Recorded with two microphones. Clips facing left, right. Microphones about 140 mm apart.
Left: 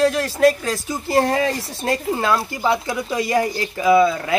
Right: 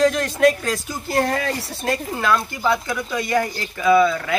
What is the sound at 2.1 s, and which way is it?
Speech, 30° left (ahead or behind).